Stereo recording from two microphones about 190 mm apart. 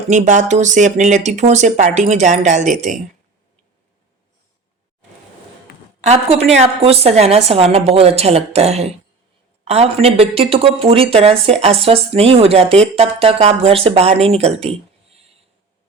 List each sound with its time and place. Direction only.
0.1 s speech: 40° right (ahead or behind)
6.1 s speech: 35° right (ahead or behind)